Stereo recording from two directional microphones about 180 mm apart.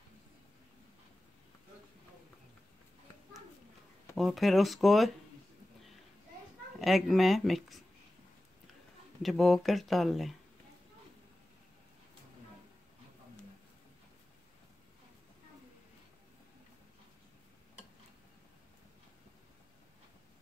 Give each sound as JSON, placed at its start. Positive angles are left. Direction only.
{"t": 4.2, "sound": "speech", "side_deg": 0}
{"t": 6.8, "sound": "speech", "side_deg": 0}
{"t": 9.2, "sound": "speech", "side_deg": 0}